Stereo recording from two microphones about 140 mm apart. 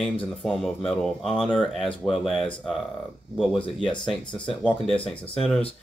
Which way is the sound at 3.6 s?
35° left (ahead or behind).